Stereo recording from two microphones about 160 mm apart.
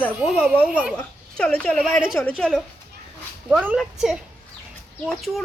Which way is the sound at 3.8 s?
Centre (ahead or behind).